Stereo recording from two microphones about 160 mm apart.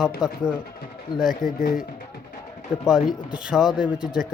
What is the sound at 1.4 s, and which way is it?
Speech, 25° right (ahead or behind).